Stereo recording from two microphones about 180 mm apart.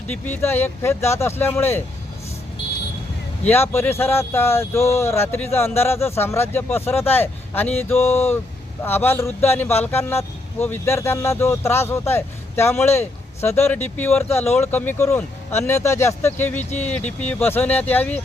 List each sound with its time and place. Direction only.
0.1 s speech: 10° left (ahead or behind)
3.4 s speech: 10° left (ahead or behind)
16.6 s speech: 40° left (ahead or behind)
17.2 s speech: 10° left (ahead or behind)